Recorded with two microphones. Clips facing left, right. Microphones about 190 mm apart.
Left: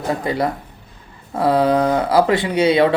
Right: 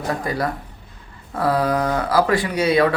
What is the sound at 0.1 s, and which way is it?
Speech, 25° left (ahead or behind).